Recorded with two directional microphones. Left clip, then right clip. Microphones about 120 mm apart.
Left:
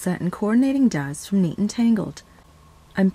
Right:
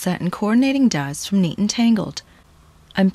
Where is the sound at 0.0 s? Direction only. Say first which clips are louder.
Right 2 dB; 20° right (ahead or behind).